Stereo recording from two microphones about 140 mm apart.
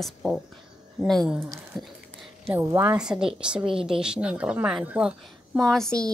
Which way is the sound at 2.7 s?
15° right (ahead or behind).